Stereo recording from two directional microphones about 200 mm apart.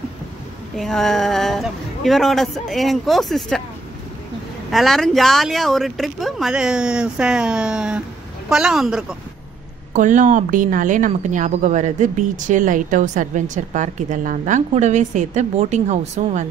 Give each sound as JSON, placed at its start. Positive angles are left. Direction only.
{"t": 0.7, "sound": "speech", "side_deg": 0}
{"t": 4.6, "sound": "speech", "side_deg": 0}
{"t": 9.9, "sound": "a woman's voice", "side_deg": -40}